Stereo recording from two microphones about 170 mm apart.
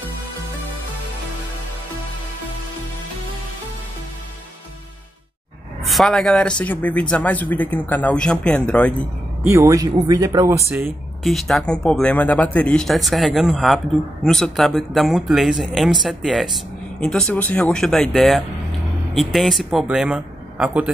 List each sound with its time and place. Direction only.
5.9 s speech: centre (ahead or behind)
9.4 s speech: 15° right (ahead or behind)
11.2 s speech: centre (ahead or behind)